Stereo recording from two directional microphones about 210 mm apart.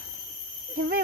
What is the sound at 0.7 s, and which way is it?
Speech, 50° right (ahead or behind).